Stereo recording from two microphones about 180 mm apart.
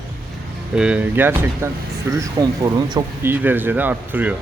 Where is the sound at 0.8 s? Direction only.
5° right (ahead or behind).